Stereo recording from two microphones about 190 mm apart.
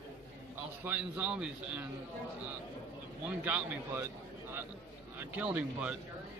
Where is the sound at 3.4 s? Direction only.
10° right (ahead or behind).